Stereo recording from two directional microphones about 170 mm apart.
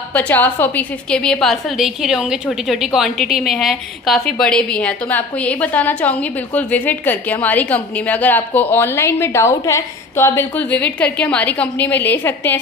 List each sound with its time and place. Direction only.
0.1 s a woman's voice: 10° left (ahead or behind)